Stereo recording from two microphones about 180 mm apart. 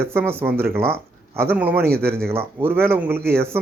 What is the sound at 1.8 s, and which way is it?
Speech, 60° right (ahead or behind).